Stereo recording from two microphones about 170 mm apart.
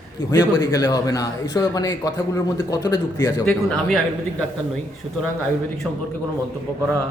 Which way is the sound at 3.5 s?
5° left (ahead or behind).